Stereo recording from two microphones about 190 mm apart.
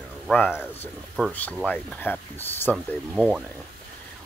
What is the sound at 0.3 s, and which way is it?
Speech, 10° left (ahead or behind).